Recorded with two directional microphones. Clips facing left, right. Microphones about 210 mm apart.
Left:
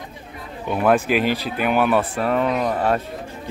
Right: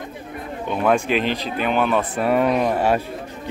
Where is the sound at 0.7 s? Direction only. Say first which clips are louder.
Left 1 dB; 5° left (ahead or behind).